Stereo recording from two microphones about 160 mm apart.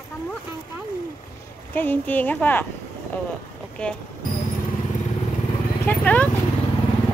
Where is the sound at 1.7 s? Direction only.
10° left (ahead or behind).